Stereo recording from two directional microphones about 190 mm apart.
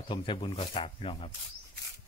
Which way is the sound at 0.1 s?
25° left (ahead or behind).